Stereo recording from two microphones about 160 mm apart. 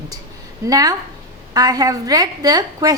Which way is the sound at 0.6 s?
20° right (ahead or behind).